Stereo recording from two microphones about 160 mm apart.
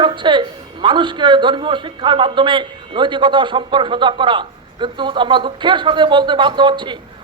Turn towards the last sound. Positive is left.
turn(degrees=-30)  # may be behind; listen again after turning